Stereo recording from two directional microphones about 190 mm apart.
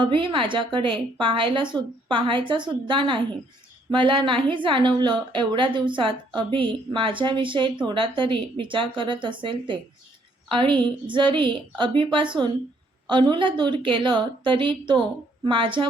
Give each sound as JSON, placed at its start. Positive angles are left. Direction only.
{"t": 0.0, "sound": "a woman's voice", "side_deg": -25}